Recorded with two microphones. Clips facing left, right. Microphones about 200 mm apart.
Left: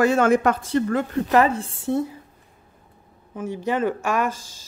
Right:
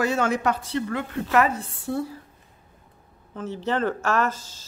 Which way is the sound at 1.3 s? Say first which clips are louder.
Left 2 dB; 30° left (ahead or behind).